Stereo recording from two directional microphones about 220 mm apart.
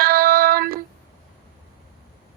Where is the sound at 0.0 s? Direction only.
40° right (ahead or behind).